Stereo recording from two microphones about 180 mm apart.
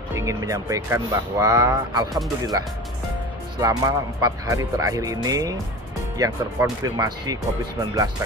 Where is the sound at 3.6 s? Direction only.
20° right (ahead or behind).